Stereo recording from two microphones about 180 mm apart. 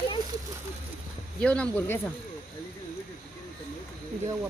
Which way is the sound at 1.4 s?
5° left (ahead or behind).